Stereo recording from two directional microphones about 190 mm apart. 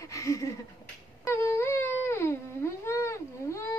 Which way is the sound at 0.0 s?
15° left (ahead or behind).